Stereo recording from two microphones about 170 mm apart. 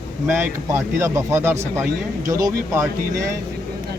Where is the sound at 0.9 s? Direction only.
15° right (ahead or behind).